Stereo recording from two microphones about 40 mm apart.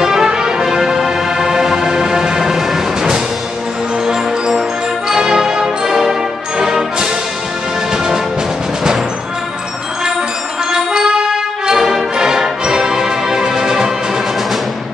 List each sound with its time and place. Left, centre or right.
0.0 s music: centre
10.7 s brass instrument: centre